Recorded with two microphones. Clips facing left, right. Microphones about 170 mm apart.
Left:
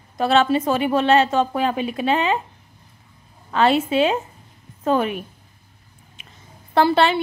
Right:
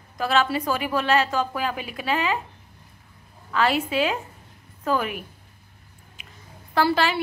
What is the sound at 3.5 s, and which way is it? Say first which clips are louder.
Speech: left 5 dB; 25° left (ahead or behind).